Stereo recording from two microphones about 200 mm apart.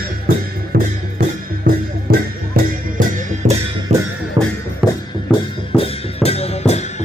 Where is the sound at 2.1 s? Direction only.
50° right (ahead or behind).